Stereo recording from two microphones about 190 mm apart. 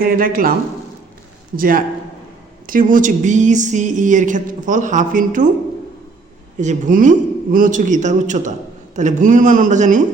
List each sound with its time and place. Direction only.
0.0 s speech: 50° right (ahead or behind)
1.5 s speech: 50° right (ahead or behind)
6.6 s speech: 40° right (ahead or behind)